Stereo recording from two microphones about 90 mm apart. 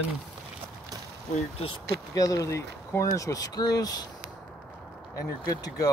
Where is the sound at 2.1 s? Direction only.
40° left (ahead or behind).